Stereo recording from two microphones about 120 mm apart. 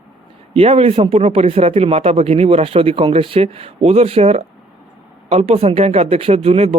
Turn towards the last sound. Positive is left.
turn(degrees=-55)  # may be behind; listen again after turning